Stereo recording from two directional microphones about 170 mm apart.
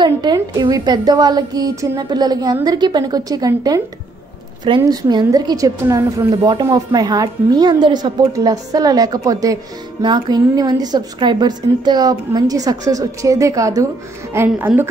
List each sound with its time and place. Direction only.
0.0 s a woman's voice: 25° right (ahead or behind)